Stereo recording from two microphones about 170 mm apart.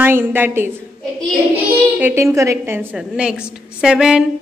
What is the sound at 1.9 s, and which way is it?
A woman's voice, 15° right (ahead or behind).